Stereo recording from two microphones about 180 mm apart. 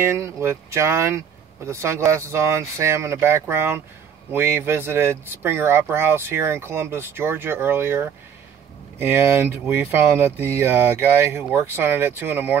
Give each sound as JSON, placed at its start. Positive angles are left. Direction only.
{"t": 0.0, "sound": "speech", "side_deg": -15}